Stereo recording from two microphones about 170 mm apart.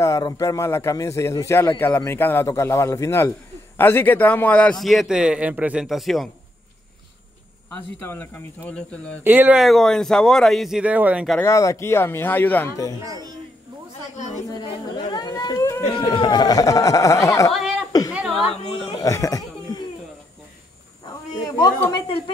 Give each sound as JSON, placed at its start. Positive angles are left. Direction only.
{"t": 0.0, "sound": "a man's voice", "side_deg": 20}
{"t": 7.7, "sound": "a man's voice", "side_deg": 10}
{"t": 9.2, "sound": "speech", "side_deg": -10}
{"t": 11.3, "sound": "a man's voice", "side_deg": 15}
{"t": 13.0, "sound": "a man's voice", "side_deg": -20}
{"t": 14.5, "sound": "speech", "side_deg": 25}
{"t": 15.8, "sound": "speech", "side_deg": 30}
{"t": 17.5, "sound": "chuckle", "side_deg": -5}
{"t": 18.1, "sound": "a sound", "side_deg": -5}
{"t": 18.9, "sound": "speech", "side_deg": 20}
{"t": 21.0, "sound": "a sound", "side_deg": 20}
{"t": 21.9, "sound": "speech", "side_deg": 30}